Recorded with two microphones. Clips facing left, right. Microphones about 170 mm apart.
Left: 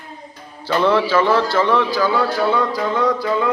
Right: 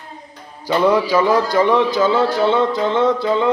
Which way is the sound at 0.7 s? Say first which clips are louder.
Right 1 dB; 10° right (ahead or behind).